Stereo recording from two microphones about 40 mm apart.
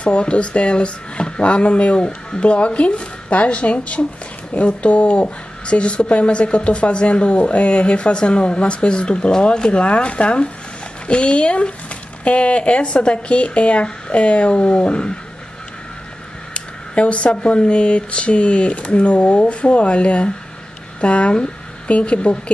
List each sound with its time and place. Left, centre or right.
0.0 s speech: left
16.5 s speech: left